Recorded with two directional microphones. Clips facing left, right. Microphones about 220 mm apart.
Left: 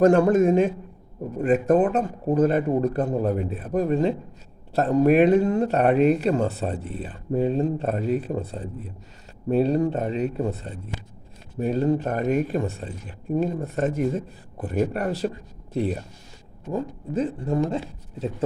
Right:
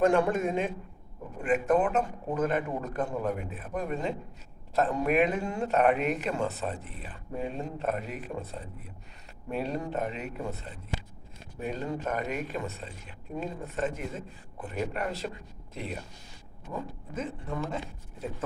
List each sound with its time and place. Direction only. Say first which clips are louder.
0.0 s speech: left 8 dB; 40° left (ahead or behind)
16.7 s speech: left 10 dB; 40° left (ahead or behind)